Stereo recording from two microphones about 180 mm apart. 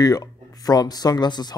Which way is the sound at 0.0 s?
20° left (ahead or behind).